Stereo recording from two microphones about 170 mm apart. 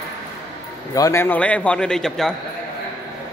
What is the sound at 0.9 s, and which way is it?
A man's voice, 20° left (ahead or behind).